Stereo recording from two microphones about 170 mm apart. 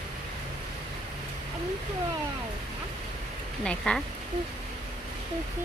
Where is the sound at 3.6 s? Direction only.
5° left (ahead or behind).